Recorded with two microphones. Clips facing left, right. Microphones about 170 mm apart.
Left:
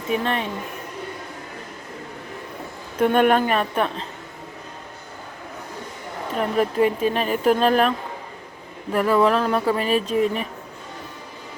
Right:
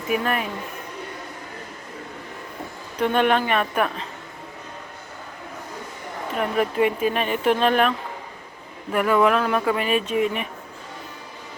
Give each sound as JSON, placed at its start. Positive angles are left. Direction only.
{"t": 0.1, "sound": "speech", "side_deg": 30}
{"t": 3.0, "sound": "speech", "side_deg": 45}
{"t": 6.3, "sound": "speech", "side_deg": 35}